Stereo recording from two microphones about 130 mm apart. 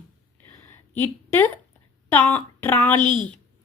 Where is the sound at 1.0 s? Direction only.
20° left (ahead or behind).